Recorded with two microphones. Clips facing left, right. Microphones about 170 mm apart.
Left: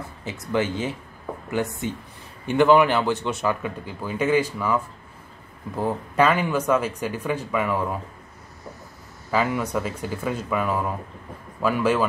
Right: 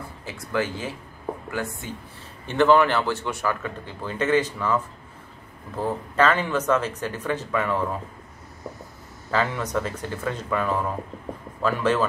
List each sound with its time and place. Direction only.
0.2 s speech: 20° left (ahead or behind)
6.1 s speech: 10° left (ahead or behind)
9.3 s speech: 10° left (ahead or behind)